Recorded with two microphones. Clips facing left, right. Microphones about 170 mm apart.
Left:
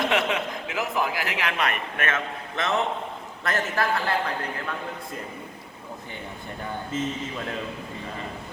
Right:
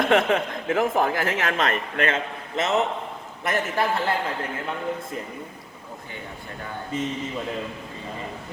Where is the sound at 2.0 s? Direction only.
25° right (ahead or behind).